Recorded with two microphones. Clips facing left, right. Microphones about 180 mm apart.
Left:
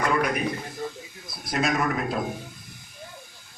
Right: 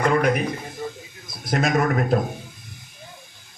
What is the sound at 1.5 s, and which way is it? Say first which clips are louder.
Speech: right 4 dB; 50° right (ahead or behind).